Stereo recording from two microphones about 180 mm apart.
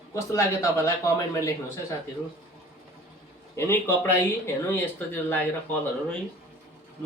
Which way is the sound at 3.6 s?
15° left (ahead or behind).